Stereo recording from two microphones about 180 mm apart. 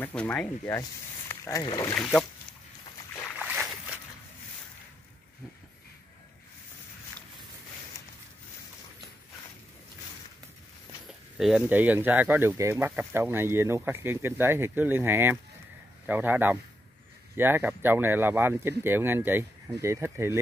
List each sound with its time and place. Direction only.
0.0 s speech: 5° left (ahead or behind)
2.0 s speech: 5° left (ahead or behind)
11.1 s speech: centre (ahead or behind)